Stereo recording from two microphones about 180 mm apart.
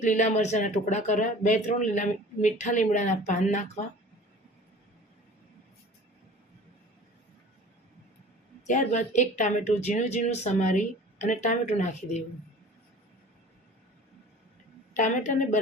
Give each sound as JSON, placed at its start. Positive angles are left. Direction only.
{"t": 0.0, "sound": "speech", "side_deg": 40}
{"t": 8.6, "sound": "speech", "side_deg": 45}
{"t": 14.9, "sound": "a woman's voice", "side_deg": 45}